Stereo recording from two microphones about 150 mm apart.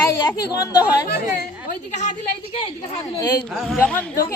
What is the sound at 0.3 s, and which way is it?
Speech, 25° left (ahead or behind).